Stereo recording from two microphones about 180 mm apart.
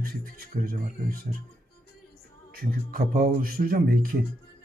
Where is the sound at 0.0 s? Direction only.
50° right (ahead or behind).